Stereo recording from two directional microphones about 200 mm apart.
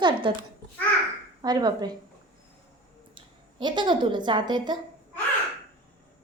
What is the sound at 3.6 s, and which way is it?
A woman's voice, 20° right (ahead or behind).